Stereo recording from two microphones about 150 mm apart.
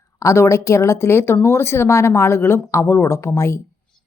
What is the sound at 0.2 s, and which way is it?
A woman's voice, 20° left (ahead or behind).